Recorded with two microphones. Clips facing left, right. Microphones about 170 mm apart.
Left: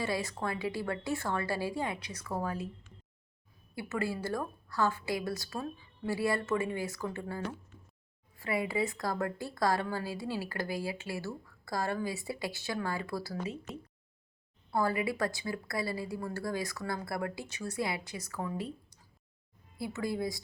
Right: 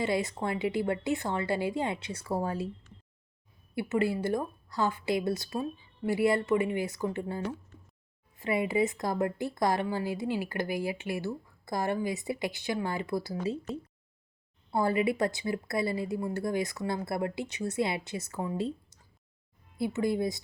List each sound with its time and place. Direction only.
0.0 s speech: 20° right (ahead or behind)
13.7 s speech: centre (ahead or behind)
14.7 s speech: 25° right (ahead or behind)